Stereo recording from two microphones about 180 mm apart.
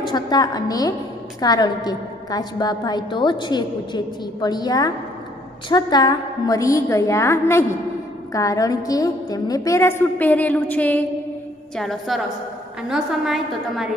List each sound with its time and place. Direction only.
0.0 s a woman's voice: 20° left (ahead or behind); by 13.9 s centre (ahead or behind)